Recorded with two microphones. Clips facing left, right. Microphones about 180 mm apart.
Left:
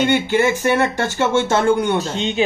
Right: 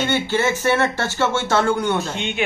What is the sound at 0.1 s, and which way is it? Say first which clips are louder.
Speech: left 4 dB; 15° left (ahead or behind).